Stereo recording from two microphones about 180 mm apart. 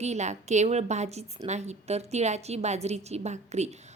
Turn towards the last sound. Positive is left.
turn(degrees=-40)  # may be behind; listen again after turning